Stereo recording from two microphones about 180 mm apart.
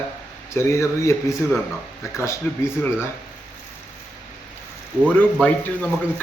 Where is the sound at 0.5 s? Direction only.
15° left (ahead or behind).